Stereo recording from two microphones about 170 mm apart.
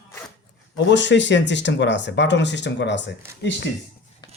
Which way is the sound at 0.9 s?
90° left.